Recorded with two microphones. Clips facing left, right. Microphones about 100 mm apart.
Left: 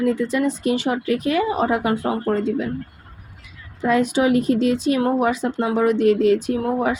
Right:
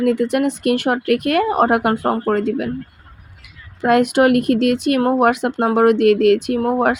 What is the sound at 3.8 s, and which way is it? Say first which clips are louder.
Speech: right 4 dB; 65° right (ahead or behind).